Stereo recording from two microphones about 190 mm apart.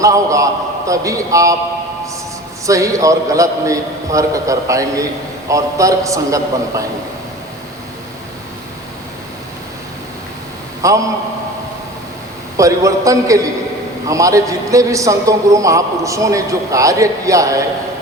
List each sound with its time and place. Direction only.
0.0 s a man's voice: 15° right (ahead or behind)
2.6 s a man's voice: 15° right (ahead or behind)
10.8 s a man's voice: 15° right (ahead or behind)
12.5 s a man's voice: 15° right (ahead or behind)